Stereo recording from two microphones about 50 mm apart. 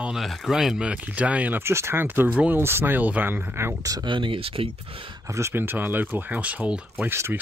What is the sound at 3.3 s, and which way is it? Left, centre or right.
Speech, right.